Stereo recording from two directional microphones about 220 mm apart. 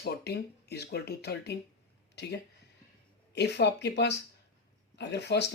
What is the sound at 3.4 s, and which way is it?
Speech, 50° left (ahead or behind).